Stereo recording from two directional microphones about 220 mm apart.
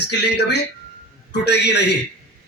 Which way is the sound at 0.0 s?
50° left (ahead or behind).